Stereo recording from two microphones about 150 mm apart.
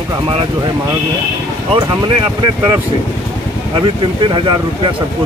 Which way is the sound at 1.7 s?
30° right (ahead or behind).